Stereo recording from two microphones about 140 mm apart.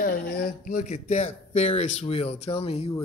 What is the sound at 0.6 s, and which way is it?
Speech, 55° left (ahead or behind).